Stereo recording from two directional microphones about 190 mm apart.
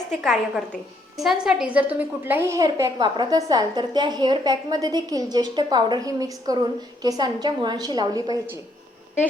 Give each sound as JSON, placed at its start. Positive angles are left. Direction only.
{"t": 0.2, "sound": "a woman's voice", "side_deg": 0}